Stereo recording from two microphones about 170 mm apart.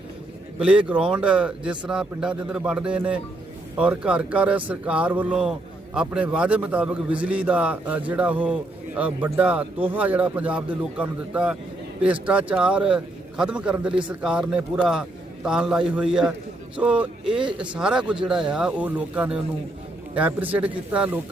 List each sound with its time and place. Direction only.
0.6 s a man's voice: 5° right (ahead or behind)